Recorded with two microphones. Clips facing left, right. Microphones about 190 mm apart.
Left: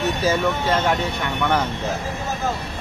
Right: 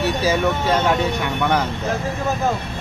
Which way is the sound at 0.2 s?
15° right (ahead or behind).